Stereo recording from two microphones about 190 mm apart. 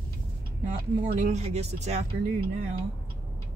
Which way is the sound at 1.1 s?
35° right (ahead or behind).